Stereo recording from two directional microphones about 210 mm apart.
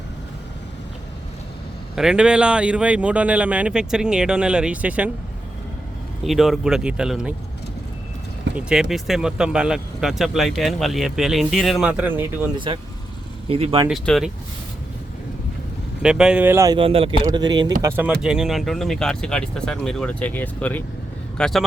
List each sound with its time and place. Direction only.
2.0 s speech: 5° right (ahead or behind)
6.2 s speech: centre (ahead or behind)
8.5 s speech: 5° right (ahead or behind)
12.5 s speech: 25° right (ahead or behind)
13.8 s speech: centre (ahead or behind)
16.0 s speech: 5° right (ahead or behind)